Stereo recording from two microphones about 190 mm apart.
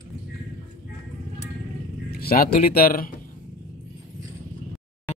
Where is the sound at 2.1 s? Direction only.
55° left (ahead or behind).